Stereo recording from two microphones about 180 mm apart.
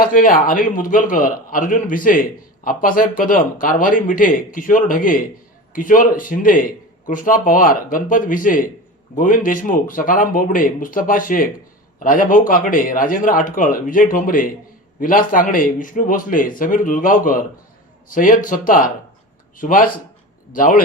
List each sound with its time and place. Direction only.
0.0 s a man's voice: 50° left (ahead or behind)